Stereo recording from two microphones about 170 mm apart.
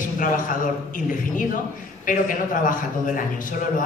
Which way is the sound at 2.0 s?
55° left (ahead or behind).